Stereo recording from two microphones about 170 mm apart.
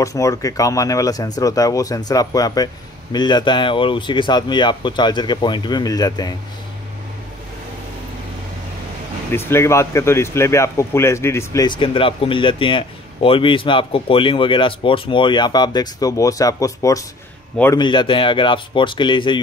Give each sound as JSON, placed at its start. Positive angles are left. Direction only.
{"t": 0.0, "sound": "speech", "side_deg": 20}
{"t": 9.3, "sound": "speech", "side_deg": 15}
{"t": 11.8, "sound": "speech", "side_deg": 30}